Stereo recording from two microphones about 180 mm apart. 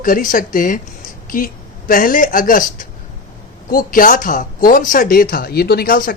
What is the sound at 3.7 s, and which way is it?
A woman's voice, 50° left (ahead or behind).